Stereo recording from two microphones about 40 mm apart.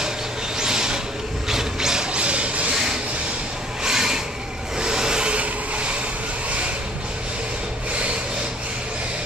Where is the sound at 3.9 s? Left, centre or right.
Centre.